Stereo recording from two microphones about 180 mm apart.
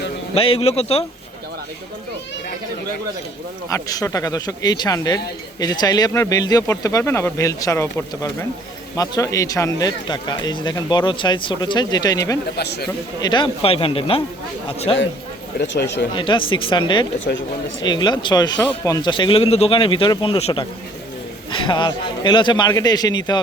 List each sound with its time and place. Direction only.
0.3 s a man's voice: 30° left (ahead or behind)
3.7 s speech: 20° left (ahead or behind)
12.5 s a man's voice: 65° left (ahead or behind)
13.2 s a man's voice: 25° left (ahead or behind)
15.6 s speech: 80° left
16.1 s speech: 25° left (ahead or behind)
17.2 s speech: 90° left
17.8 s speech: 25° left (ahead or behind)